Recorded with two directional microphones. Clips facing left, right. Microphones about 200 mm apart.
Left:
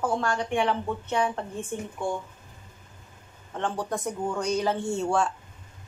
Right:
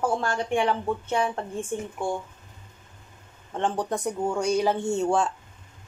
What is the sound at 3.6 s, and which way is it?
A woman's voice, 20° right (ahead or behind).